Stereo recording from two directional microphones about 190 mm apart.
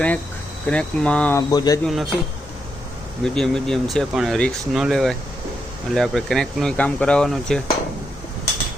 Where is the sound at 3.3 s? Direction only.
Centre (ahead or behind).